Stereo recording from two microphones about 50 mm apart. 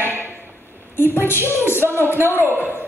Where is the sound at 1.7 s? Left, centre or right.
Left.